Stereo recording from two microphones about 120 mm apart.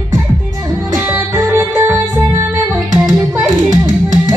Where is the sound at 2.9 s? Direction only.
30° right (ahead or behind).